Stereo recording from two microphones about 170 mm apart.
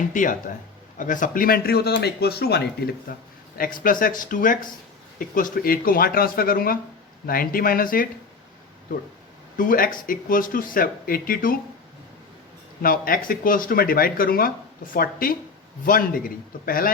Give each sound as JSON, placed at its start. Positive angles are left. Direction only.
{"t": 0.1, "sound": "speech", "side_deg": 50}
{"t": 3.6, "sound": "speech", "side_deg": 55}
{"t": 9.6, "sound": "speech", "side_deg": 55}
{"t": 12.8, "sound": "speech", "side_deg": 55}